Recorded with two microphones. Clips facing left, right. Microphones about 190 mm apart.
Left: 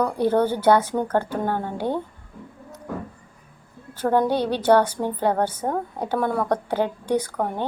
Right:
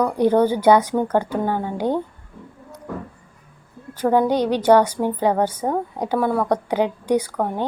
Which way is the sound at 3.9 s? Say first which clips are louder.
Right 3 dB; 10° right (ahead or behind).